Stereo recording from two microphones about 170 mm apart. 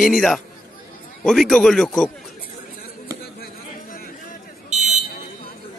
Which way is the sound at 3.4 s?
60° left (ahead or behind).